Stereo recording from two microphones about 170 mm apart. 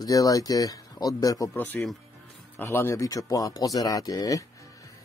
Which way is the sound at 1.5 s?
10° left (ahead or behind).